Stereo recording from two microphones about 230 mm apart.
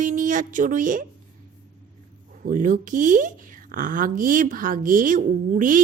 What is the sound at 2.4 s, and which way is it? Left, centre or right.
Speech, right.